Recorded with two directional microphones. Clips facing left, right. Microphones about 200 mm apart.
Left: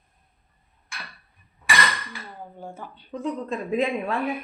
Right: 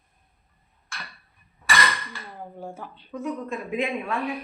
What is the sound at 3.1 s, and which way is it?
Speech, 35° left (ahead or behind).